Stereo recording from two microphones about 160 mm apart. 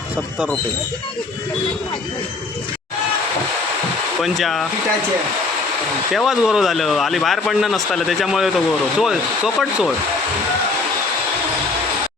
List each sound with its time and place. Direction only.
4.2 s speech: centre (ahead or behind)
6.1 s speech: 5° right (ahead or behind)